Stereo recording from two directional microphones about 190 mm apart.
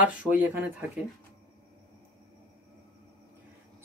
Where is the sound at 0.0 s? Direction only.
10° right (ahead or behind).